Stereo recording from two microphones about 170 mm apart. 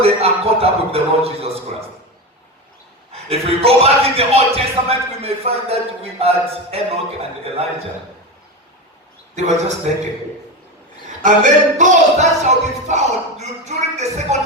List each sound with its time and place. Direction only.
0.0 s speech: 35° right (ahead or behind)
3.1 s speech: 35° right (ahead or behind)
9.3 s a man's voice: 40° right (ahead or behind)
11.2 s speech: 45° right (ahead or behind)